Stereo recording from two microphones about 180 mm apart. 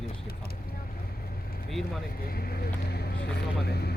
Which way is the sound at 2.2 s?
55° left (ahead or behind).